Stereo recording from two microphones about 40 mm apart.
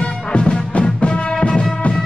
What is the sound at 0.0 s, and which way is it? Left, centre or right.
Music, left.